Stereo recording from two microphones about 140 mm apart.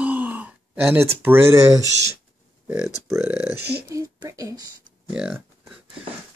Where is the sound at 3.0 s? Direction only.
15° right (ahead or behind).